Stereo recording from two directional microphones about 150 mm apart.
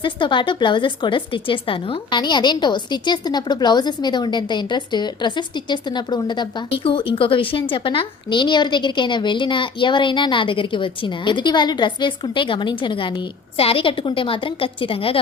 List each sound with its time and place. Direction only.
0.0 s a woman's voice: 30° left (ahead or behind)